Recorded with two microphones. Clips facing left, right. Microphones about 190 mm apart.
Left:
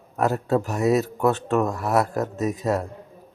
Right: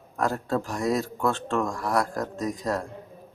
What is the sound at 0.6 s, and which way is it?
Speech, 20° left (ahead or behind).